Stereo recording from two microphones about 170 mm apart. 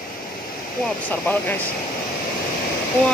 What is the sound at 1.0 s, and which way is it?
Speech, 10° left (ahead or behind).